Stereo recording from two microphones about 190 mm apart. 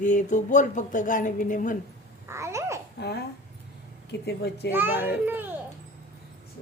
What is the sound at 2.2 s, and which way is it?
Babbling, 15° right (ahead or behind).